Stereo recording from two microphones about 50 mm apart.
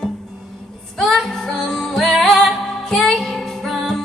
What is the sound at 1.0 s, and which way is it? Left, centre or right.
Music, centre.